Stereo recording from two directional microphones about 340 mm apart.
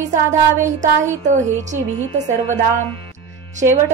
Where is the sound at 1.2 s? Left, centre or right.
Right.